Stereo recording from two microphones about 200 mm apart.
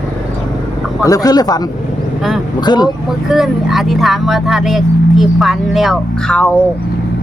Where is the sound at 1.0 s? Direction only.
15° left (ahead or behind).